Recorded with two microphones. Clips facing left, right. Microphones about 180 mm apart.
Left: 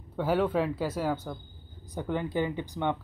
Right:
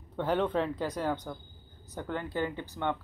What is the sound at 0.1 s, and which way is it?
Speech, 5° left (ahead or behind).